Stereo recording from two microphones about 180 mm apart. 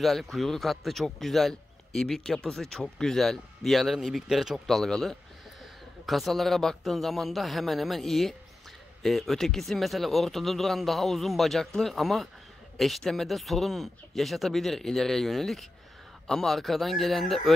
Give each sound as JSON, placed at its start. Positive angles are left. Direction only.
{"t": 0.0, "sound": "a man's voice", "side_deg": 0}